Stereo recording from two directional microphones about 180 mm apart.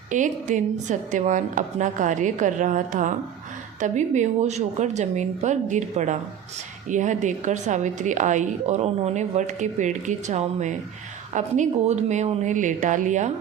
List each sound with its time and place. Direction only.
0.1 s a woman's voice: 45° right (ahead or behind)